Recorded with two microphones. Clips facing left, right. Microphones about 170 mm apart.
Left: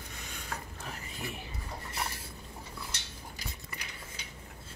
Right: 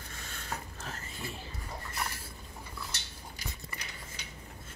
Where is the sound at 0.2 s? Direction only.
15° left (ahead or behind).